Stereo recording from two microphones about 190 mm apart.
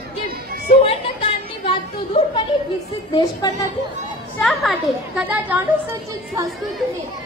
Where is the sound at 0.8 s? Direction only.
30° left (ahead or behind).